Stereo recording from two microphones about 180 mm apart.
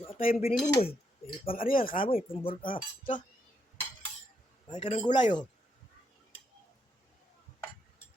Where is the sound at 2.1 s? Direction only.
30° left (ahead or behind).